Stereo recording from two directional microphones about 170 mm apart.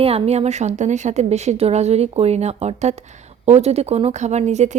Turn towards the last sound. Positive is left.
turn(degrees=-45)  # may be behind; listen again after turning